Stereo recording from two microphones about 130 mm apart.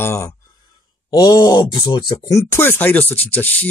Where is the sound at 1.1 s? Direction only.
30° left (ahead or behind).